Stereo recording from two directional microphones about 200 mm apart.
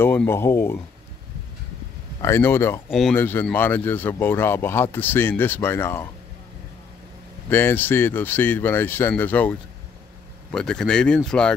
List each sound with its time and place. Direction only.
0.0 s speech: 10° left (ahead or behind)
2.2 s speech: 10° left (ahead or behind)
2.9 s speech: centre (ahead or behind)
7.4 s speech: 10° left (ahead or behind)